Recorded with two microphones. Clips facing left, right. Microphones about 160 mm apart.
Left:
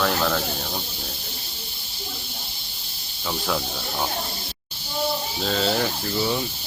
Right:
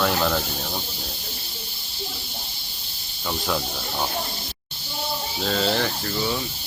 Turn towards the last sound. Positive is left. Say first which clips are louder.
# even
turn(degrees=0)  # may be behind; listen again after turning